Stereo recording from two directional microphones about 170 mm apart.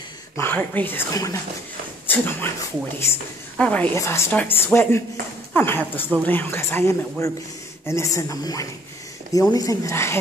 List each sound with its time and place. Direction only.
0.4 s a woman's voice: 10° left (ahead or behind)
3.5 s a woman's voice: 5° left (ahead or behind)